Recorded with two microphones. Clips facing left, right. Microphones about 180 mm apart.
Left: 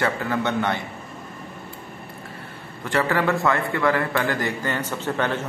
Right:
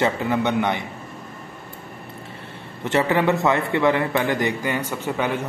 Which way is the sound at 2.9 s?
20° right (ahead or behind).